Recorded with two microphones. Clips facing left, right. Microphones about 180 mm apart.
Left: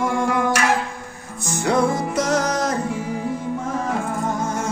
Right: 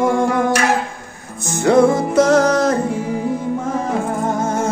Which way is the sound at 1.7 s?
50° right (ahead or behind).